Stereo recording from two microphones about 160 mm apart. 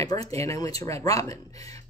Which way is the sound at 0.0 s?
20° left (ahead or behind).